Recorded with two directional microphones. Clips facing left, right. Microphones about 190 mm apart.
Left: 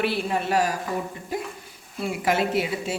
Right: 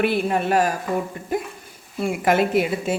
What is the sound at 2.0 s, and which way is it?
Dishes, 50° right (ahead or behind).